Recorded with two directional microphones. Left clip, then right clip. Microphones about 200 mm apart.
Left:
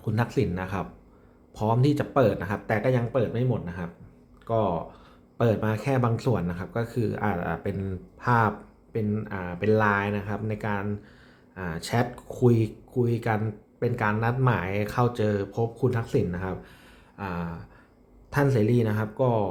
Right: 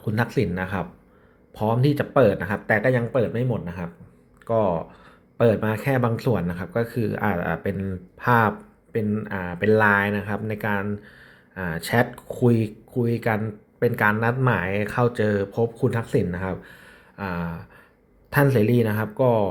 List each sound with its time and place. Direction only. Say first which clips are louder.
0.0 s speech: right 3 dB; 10° right (ahead or behind)